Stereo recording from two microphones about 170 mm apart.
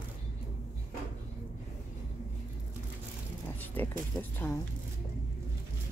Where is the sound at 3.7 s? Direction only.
10° left (ahead or behind).